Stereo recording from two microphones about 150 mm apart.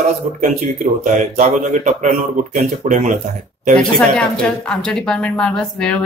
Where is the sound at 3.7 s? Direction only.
5° left (ahead or behind).